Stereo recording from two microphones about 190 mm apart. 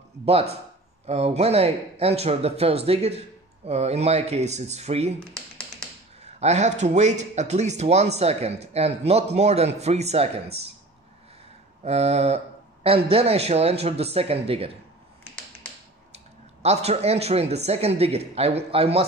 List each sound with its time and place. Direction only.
0.2 s speech: 30° right (ahead or behind)
6.2 s speech: 35° right (ahead or behind)
11.8 s speech: 35° right (ahead or behind)
16.6 s speech: 35° right (ahead or behind)